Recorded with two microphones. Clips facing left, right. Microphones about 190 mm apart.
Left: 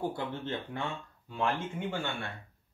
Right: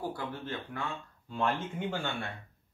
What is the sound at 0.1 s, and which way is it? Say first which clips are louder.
Speech: left 2 dB; 25° left (ahead or behind).